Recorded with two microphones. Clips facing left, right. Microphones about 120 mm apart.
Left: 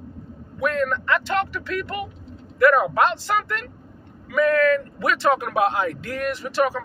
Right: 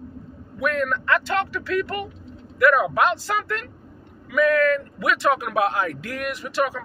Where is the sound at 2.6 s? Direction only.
30° left (ahead or behind).